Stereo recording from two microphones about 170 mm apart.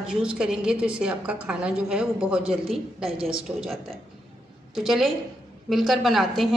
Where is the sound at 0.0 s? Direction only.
5° right (ahead or behind).